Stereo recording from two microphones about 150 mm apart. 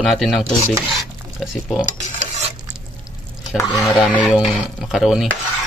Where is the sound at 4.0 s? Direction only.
5° right (ahead or behind).